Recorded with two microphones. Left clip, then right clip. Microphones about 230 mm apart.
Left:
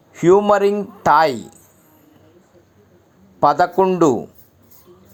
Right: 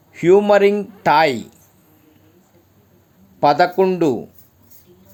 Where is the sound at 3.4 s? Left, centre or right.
Centre.